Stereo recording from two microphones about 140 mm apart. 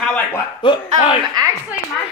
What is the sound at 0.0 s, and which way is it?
Chuckle, 10° left (ahead or behind).